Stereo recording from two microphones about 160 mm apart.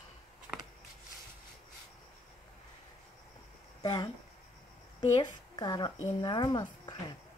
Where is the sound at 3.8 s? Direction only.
25° left (ahead or behind).